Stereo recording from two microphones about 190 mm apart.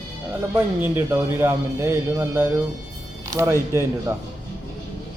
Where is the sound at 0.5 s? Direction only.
10° right (ahead or behind).